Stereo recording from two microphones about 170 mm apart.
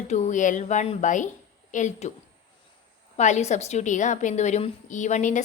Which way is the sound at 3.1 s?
40° left (ahead or behind).